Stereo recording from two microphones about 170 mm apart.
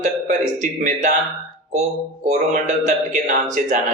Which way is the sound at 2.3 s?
45° right (ahead or behind).